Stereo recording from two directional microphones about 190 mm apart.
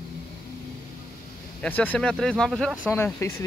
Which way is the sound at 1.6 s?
10° left (ahead or behind).